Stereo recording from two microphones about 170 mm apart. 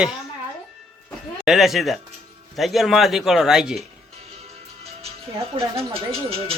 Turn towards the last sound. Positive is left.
turn(degrees=-35)  # may be behind; listen again after turning